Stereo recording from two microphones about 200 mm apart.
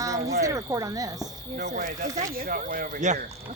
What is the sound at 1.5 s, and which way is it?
Speech, 40° right (ahead or behind).